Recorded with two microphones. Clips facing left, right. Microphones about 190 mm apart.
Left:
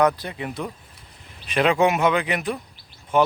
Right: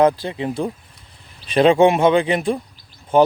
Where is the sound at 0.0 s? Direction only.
25° right (ahead or behind).